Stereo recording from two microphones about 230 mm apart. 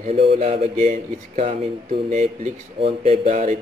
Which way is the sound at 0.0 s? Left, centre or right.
Right.